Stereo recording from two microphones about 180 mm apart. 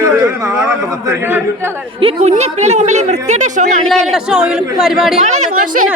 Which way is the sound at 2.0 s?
35° right (ahead or behind).